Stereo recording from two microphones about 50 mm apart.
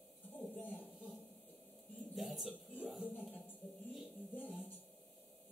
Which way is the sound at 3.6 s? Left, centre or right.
Centre.